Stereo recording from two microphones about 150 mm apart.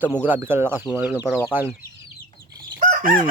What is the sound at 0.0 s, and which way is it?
Speech, 10° right (ahead or behind).